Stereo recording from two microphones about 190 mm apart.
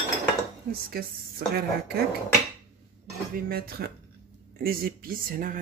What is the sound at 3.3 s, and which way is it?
Speech, 55° right (ahead or behind).